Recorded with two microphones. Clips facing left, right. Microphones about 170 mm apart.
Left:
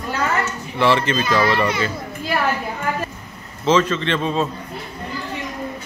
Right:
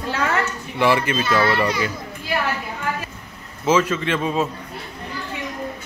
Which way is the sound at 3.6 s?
10° right (ahead or behind).